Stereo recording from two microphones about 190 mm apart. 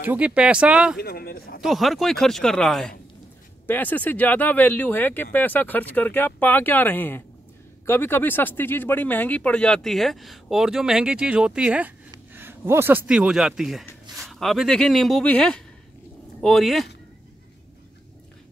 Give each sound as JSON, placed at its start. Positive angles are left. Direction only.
{"t": 0.0, "sound": "speech", "side_deg": -10}
{"t": 0.9, "sound": "speech", "side_deg": 55}
{"t": 1.6, "sound": "speech", "side_deg": 0}